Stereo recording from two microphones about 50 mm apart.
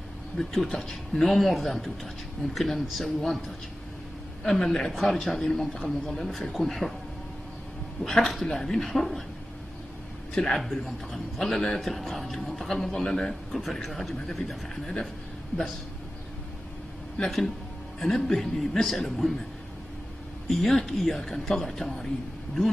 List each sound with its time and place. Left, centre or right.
0.4 s a man's voice: centre
8.0 s a man's voice: centre
10.3 s a man's voice: centre
17.2 s a man's voice: centre
20.4 s a man's voice: centre